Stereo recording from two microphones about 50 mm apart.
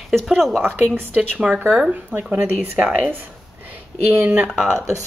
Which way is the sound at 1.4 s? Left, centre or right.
Centre.